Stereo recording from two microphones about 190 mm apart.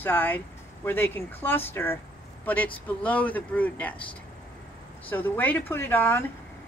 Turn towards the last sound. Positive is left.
turn(degrees=10)  # may be behind; listen again after turning